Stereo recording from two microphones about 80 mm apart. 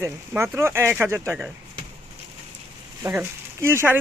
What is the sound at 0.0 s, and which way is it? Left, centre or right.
Speech, right.